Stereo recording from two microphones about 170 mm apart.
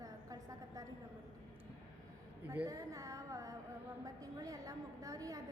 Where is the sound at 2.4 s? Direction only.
20° right (ahead or behind).